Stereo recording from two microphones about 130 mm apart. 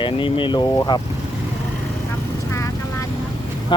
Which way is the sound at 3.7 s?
40° left (ahead or behind).